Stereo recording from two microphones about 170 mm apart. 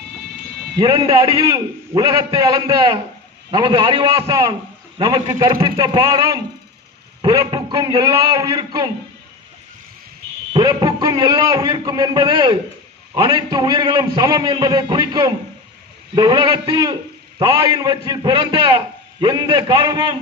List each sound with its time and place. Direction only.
0.8 s a man's voice: 25° right (ahead or behind)
10.5 s a man's voice: 25° right (ahead or behind)